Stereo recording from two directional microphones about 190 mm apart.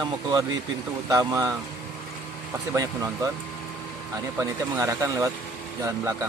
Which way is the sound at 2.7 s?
15° right (ahead or behind).